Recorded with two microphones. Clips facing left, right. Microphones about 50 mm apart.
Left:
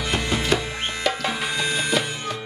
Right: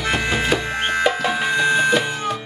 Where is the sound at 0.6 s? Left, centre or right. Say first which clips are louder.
Right 7 dB; right.